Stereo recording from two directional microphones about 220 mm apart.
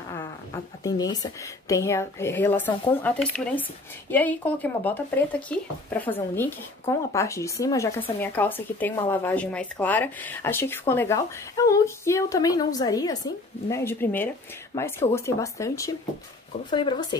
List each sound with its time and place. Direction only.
0.8 s speech: 15° left (ahead or behind)